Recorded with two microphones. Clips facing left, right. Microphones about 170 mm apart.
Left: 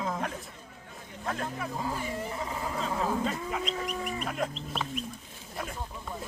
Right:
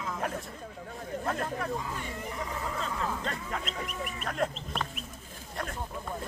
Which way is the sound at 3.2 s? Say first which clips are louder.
Left 4 dB; 5° left (ahead or behind).